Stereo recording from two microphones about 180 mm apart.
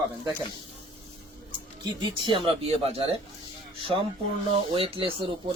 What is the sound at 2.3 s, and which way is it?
Speech, 30° right (ahead or behind).